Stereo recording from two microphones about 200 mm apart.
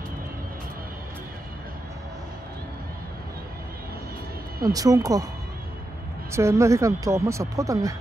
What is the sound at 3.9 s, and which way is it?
Vehicle, 50° right (ahead or behind).